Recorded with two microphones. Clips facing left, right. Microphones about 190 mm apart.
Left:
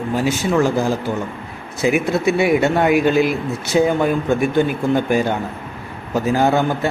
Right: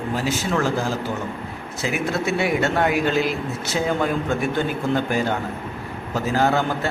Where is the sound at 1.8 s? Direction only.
15° left (ahead or behind).